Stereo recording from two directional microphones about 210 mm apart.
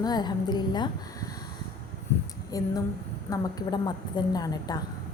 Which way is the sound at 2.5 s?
15° left (ahead or behind).